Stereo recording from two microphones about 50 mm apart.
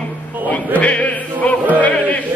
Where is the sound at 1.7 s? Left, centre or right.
Left.